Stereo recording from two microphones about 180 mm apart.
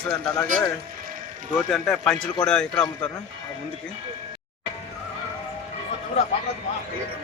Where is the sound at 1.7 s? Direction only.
Centre (ahead or behind).